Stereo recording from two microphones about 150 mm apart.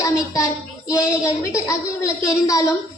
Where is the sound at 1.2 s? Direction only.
20° left (ahead or behind).